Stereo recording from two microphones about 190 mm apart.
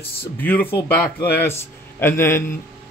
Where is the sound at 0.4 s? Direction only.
10° left (ahead or behind).